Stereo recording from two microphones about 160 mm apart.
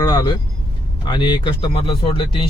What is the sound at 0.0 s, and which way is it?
A man's voice, 25° left (ahead or behind).